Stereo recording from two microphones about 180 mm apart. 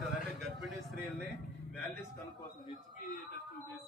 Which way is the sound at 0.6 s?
Centre (ahead or behind).